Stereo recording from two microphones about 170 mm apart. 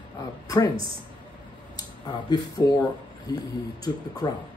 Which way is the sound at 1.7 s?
25° left (ahead or behind).